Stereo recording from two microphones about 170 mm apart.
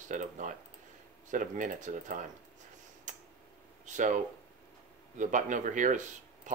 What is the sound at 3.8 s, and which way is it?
Speech, 45° right (ahead or behind).